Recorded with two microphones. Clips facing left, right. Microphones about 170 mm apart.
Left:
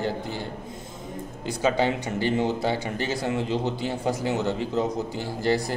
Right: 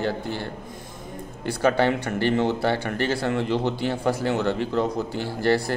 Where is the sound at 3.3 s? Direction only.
65° right (ahead or behind).